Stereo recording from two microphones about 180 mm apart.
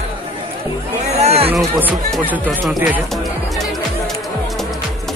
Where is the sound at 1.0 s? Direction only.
35° right (ahead or behind).